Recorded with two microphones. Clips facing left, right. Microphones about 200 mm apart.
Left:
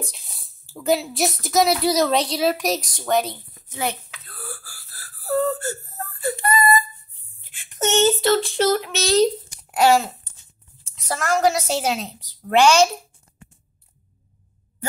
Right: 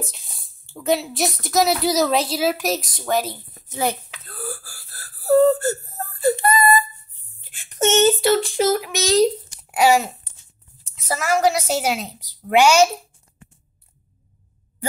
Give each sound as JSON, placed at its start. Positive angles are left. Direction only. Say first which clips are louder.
{"t": 0.0, "sound": "a woman's voice", "louder": "right 1 dB", "side_deg": 0}
{"t": 3.5, "sound": "whimper", "louder": "right 4 dB", "side_deg": -35}
{"t": 7.8, "sound": "a woman's voice", "louder": "right 2 dB", "side_deg": -20}